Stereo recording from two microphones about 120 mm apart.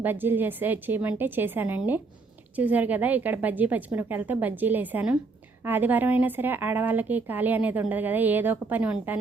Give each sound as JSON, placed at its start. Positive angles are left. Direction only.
{"t": 0.0, "sound": "speech", "side_deg": -15}